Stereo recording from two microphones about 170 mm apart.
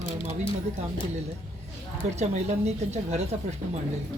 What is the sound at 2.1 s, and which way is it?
A woman's voice, 40° right (ahead or behind).